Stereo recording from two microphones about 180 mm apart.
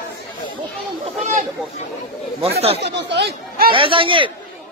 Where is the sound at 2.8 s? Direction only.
70° right (ahead or behind).